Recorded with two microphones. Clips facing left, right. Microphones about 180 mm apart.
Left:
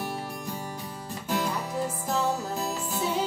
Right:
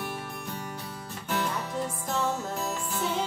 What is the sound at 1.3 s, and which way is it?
Music, 10° left (ahead or behind).